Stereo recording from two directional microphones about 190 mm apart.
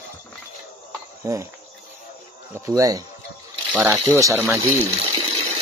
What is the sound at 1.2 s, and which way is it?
Speech, 15° right (ahead or behind).